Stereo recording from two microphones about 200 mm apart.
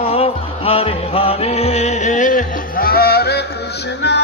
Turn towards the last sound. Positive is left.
turn(degrees=60)  # may be behind; listen again after turning